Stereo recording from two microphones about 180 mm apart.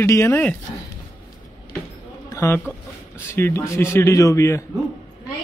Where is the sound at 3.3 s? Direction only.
15° left (ahead or behind).